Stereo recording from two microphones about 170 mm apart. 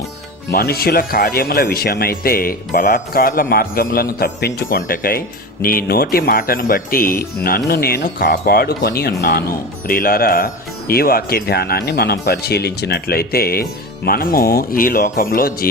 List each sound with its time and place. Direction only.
0.5 s speech: 65° left (ahead or behind)